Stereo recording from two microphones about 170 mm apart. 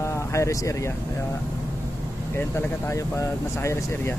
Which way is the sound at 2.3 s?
15° left (ahead or behind).